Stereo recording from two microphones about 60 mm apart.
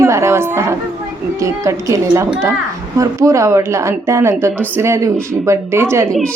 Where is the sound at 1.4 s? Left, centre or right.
Right.